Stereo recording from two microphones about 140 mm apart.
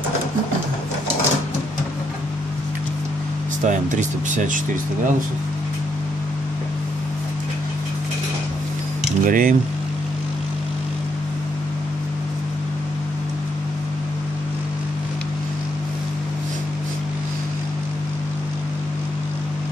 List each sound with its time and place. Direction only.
3.6 s speech: 60° right (ahead or behind)
9.2 s speech: 75° right (ahead or behind)